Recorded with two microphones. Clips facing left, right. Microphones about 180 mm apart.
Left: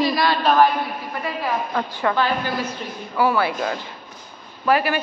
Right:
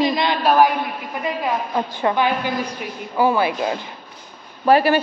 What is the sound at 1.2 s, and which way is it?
A woman's voice, 20° right (ahead or behind).